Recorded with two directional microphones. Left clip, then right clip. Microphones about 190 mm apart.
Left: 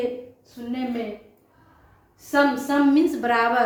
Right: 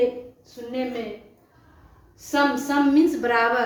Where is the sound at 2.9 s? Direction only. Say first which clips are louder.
Right 1 dB; 15° left (ahead or behind).